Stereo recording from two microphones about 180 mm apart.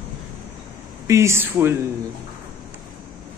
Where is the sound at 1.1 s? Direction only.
15° right (ahead or behind).